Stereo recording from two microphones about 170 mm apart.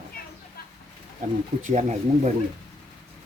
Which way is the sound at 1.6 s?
45° right (ahead or behind).